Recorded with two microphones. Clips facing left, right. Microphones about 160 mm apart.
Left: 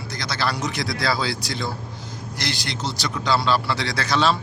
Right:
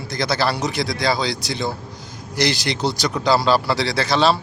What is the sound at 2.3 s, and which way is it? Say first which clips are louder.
Speech: right 9 dB; 85° right.